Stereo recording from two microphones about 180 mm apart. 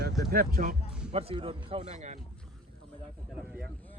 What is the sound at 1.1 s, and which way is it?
Speech, 35° right (ahead or behind).